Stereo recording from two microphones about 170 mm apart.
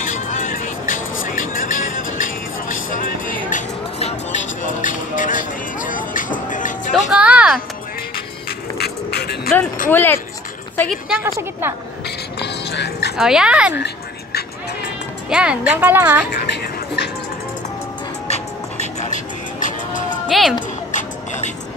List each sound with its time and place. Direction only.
0.0 s music: 50° left (ahead or behind)
3.3 s music: 50° left (ahead or behind)
6.9 s music: 5° right (ahead or behind)
8.7 s music: 70° left (ahead or behind)
9.8 s speech: 10° left (ahead or behind)
11.2 s a woman's voice: 20° right (ahead or behind)
12.4 s music: 80° left
13.1 s speech: 5° right (ahead or behind)
13.7 s music: 75° left (ahead or behind)
15.2 s a woman's voice: 5° right (ahead or behind)
16.3 s a sound: 70° left (ahead or behind)
18.3 s music: 40° left (ahead or behind)
20.2 s music: centre (ahead or behind)
20.9 s music: 45° left (ahead or behind)